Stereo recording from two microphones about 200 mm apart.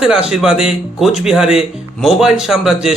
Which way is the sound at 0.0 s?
5° right (ahead or behind).